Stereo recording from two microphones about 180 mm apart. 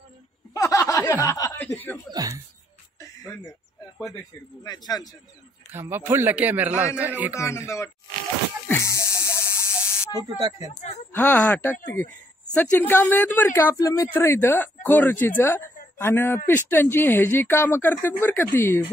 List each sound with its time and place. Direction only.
0.6 s snicker: 15° left (ahead or behind)
2.0 s speech: 20° right (ahead or behind)
3.0 s a sound: 15° left (ahead or behind)
4.6 s a man's voice: 20° left (ahead or behind)
5.7 s a man's voice: 10° right (ahead or behind)
7.3 s speech: 15° left (ahead or behind)
8.6 s music: 15° left (ahead or behind)
10.1 s speech: 25° right (ahead or behind)
11.1 s speech: 10° left (ahead or behind)